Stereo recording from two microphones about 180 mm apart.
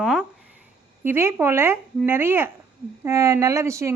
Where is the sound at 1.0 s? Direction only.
15° right (ahead or behind).